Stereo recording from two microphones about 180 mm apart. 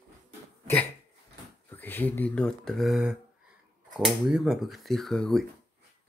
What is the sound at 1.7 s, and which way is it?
Speech, 10° left (ahead or behind).